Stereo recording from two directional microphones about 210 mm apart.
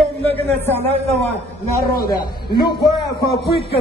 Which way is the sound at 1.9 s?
45° left (ahead or behind).